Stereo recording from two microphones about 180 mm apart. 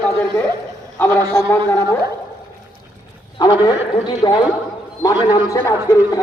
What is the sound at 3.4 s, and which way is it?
A man's voice, 20° left (ahead or behind).